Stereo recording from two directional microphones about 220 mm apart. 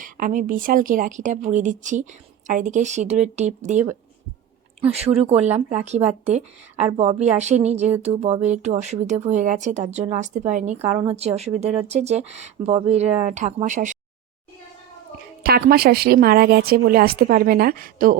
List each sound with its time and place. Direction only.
0.0 s speech: 35° right (ahead or behind)
15.4 s a woman's voice: 45° right (ahead or behind)